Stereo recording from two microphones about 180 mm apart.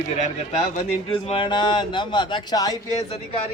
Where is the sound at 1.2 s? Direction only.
30° left (ahead or behind).